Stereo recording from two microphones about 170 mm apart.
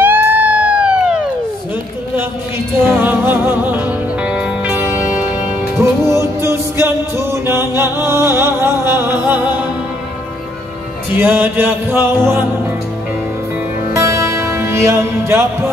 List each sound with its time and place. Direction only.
0.0 s a sound: 10° right (ahead or behind)
2.8 s music: 10° right (ahead or behind)
11.1 s music: 10° right (ahead or behind)
13.9 s music: 15° right (ahead or behind)